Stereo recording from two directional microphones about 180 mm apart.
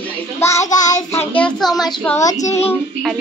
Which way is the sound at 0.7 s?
40° left (ahead or behind).